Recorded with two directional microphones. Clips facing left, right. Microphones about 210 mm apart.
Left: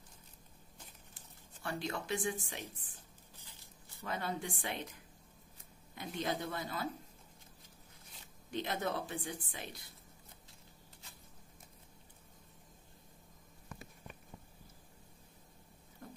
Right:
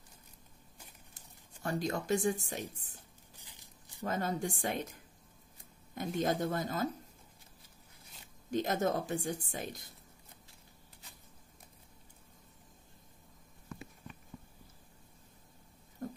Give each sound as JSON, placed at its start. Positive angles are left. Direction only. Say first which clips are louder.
{"t": 1.6, "sound": "speech", "louder": "right 5 dB", "side_deg": -40}
{"t": 3.3, "sound": "a sound", "louder": "right 1 dB", "side_deg": -15}
{"t": 4.0, "sound": "speech", "louder": "right 5 dB", "side_deg": -45}
{"t": 5.9, "sound": "speech", "louder": "right 6 dB", "side_deg": -45}
{"t": 8.5, "sound": "speech", "louder": "right 6 dB", "side_deg": -45}
{"t": 16.0, "sound": "rodents", "louder": "right 10 dB", "side_deg": -40}